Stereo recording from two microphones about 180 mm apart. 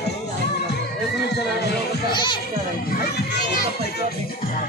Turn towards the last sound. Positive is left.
turn(degrees=60)  # may be behind; listen again after turning